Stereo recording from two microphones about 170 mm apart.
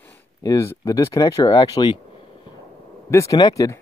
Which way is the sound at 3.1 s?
20° left (ahead or behind).